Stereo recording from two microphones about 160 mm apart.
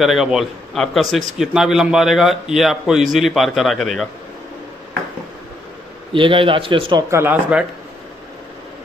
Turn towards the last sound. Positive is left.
turn(degrees=-10)  # may be behind; listen again after turning